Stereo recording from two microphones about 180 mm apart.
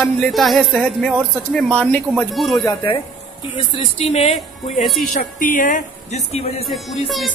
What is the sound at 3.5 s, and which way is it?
Speech, 35° left (ahead or behind).